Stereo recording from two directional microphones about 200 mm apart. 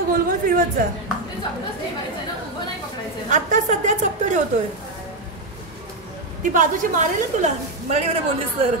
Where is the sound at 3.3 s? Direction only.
40° right (ahead or behind).